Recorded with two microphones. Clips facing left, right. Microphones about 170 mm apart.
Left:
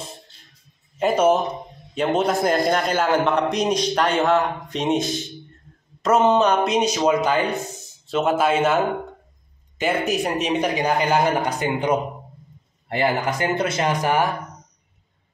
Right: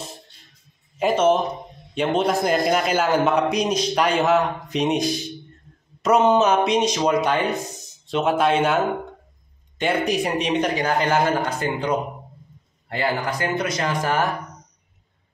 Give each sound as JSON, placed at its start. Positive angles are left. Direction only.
{"t": 1.1, "sound": "a man's voice", "side_deg": 10}
{"t": 6.0, "sound": "a man's voice", "side_deg": 0}